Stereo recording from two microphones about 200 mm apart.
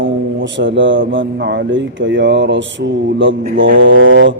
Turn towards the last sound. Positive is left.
turn(degrees=-70)  # may be behind; listen again after turning